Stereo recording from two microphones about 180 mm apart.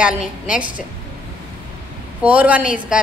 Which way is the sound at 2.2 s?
10° right (ahead or behind).